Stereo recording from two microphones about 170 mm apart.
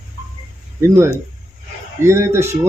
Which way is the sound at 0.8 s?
15° right (ahead or behind).